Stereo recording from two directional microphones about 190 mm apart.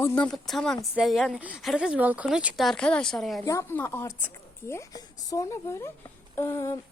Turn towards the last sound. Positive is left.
turn(degrees=15)  # may be behind; listen again after turning